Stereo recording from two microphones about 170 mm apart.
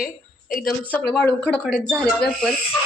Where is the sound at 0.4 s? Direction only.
55° left (ahead or behind).